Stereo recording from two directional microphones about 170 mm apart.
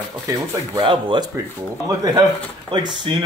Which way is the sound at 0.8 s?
30° right (ahead or behind).